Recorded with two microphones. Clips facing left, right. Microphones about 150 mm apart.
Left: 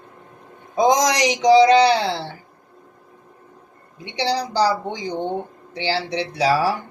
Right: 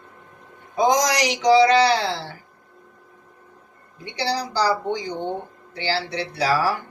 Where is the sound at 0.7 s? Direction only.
20° left (ahead or behind).